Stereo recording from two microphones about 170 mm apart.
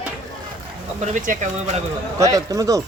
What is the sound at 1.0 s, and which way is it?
Speech, 45° right (ahead or behind).